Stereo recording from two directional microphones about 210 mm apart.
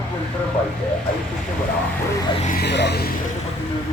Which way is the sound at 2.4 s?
45° left (ahead or behind).